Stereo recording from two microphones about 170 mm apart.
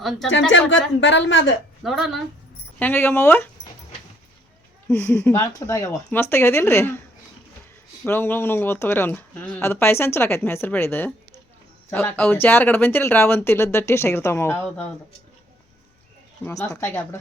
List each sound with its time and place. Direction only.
0.5 s a woman's voice: 90° left
1.8 s speech: centre (ahead or behind)
2.7 s speech: 10° left (ahead or behind)
4.9 s speech: 10° left (ahead or behind)
8.0 s speech: 15° left (ahead or behind)
16.6 s speech: 15° left (ahead or behind)